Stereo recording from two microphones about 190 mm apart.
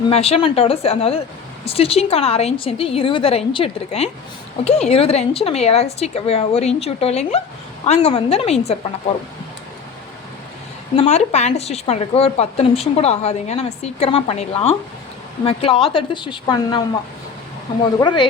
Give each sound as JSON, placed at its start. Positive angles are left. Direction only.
{"t": 0.1, "sound": "a woman's voice", "side_deg": 30}
{"t": 10.9, "sound": "a woman's voice", "side_deg": 35}
{"t": 18.0, "sound": "a woman's voice", "side_deg": 25}